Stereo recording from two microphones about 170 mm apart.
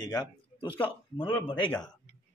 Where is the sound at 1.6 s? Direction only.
10° left (ahead or behind).